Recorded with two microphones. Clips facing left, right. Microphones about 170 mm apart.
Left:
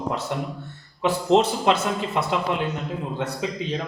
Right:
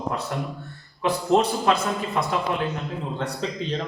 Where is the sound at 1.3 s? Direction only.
20° left (ahead or behind).